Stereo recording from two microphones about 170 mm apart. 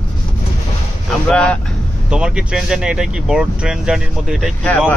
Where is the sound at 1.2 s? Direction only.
5° left (ahead or behind).